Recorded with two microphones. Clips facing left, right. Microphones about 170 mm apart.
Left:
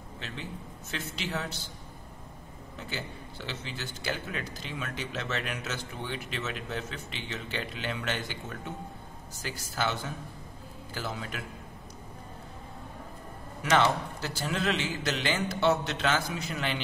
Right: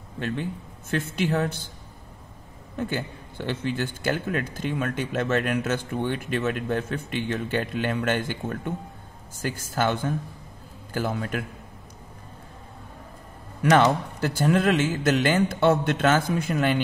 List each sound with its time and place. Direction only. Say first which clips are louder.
0.2 s a man's voice: right 11 dB; 55° right (ahead or behind)
2.8 s a man's voice: right 10 dB; 50° right (ahead or behind)
13.6 s a man's voice: right 6 dB; 50° right (ahead or behind)